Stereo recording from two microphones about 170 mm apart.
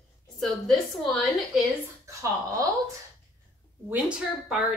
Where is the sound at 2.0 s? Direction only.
20° right (ahead or behind).